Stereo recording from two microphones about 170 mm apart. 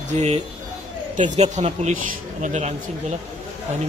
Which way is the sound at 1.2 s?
40° right (ahead or behind).